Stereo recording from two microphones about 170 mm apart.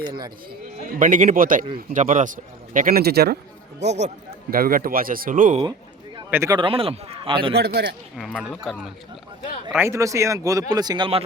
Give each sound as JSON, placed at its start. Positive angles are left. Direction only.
{"t": 0.0, "sound": "speech", "side_deg": -25}
{"t": 0.9, "sound": "speech", "side_deg": -50}
{"t": 3.8, "sound": "speech", "side_deg": -40}
{"t": 4.5, "sound": "speech", "side_deg": -60}
{"t": 6.3, "sound": "a man's voice", "side_deg": -15}
{"t": 6.6, "sound": "speech", "side_deg": -30}
{"t": 7.5, "sound": "a man's voice", "side_deg": -70}
{"t": 8.2, "sound": "speech", "side_deg": 0}
{"t": 9.7, "sound": "speech", "side_deg": -15}